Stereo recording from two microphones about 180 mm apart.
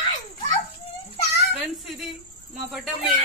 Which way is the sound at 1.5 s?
Centre (ahead or behind).